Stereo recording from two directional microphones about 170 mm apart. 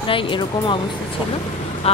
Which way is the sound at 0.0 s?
30° left (ahead or behind).